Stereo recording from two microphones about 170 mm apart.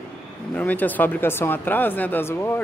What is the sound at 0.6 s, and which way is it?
Speech, 10° left (ahead or behind).